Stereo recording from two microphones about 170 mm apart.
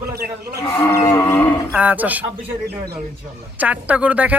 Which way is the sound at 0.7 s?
15° left (ahead or behind).